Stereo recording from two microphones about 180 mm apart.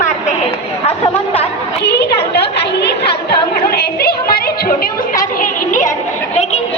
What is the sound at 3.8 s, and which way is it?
Music, 60° left (ahead or behind).